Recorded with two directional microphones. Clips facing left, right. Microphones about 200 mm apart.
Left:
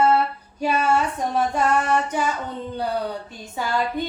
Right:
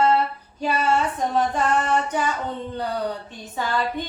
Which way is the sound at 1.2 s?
10° left (ahead or behind).